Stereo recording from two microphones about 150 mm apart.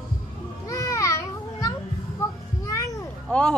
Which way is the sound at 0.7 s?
20° left (ahead or behind).